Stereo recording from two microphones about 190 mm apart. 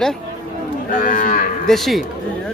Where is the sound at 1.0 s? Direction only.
45° left (ahead or behind).